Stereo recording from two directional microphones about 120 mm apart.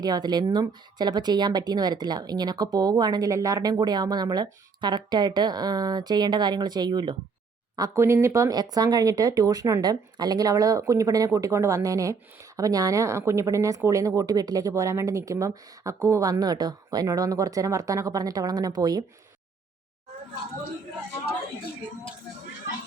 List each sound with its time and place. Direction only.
0.0 s speech: 35° right (ahead or behind)
7.8 s speech: 20° right (ahead or behind)